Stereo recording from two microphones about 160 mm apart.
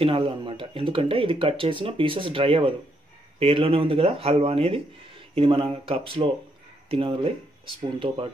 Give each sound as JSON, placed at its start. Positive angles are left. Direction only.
{"t": 0.0, "sound": "speech", "side_deg": -35}